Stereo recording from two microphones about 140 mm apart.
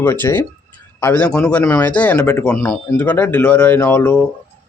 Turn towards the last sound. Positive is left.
turn(degrees=10)  # may be behind; listen again after turning